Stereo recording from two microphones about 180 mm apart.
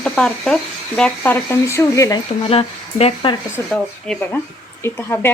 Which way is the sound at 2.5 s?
35° left (ahead or behind).